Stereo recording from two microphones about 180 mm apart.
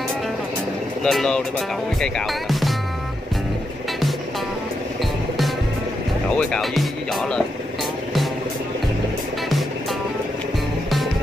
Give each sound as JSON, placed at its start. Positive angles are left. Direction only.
{"t": 1.0, "sound": "speech", "side_deg": 0}
{"t": 6.3, "sound": "speech", "side_deg": 5}